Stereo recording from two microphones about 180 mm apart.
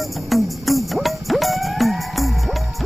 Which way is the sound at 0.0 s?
Centre (ahead or behind).